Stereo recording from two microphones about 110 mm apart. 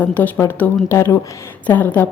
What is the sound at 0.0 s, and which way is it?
A woman's voice, 15° left (ahead or behind).